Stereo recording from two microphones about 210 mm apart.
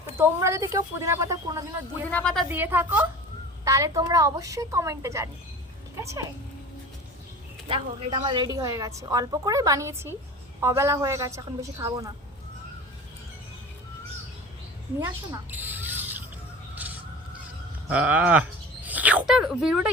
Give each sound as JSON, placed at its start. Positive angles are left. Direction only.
{"t": 0.2, "sound": "a woman's voice", "side_deg": -15}
{"t": 2.0, "sound": "a woman's voice", "side_deg": 5}
{"t": 2.5, "sound": "a woman's voice", "side_deg": -10}
{"t": 7.7, "sound": "a woman's voice", "side_deg": -25}
{"t": 15.0, "sound": "a sound", "side_deg": -10}
{"t": 17.8, "sound": "speech", "side_deg": -5}